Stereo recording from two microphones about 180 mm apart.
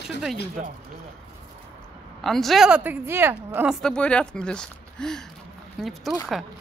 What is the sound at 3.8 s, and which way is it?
A woman's voice, 5° left (ahead or behind).